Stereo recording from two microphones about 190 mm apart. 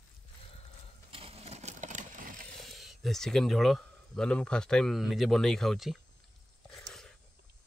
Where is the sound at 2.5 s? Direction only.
Centre (ahead or behind).